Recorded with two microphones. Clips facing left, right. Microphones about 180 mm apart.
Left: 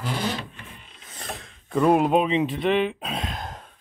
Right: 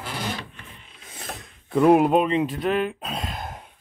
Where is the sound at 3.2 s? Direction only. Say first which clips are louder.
Even; 5° right (ahead or behind).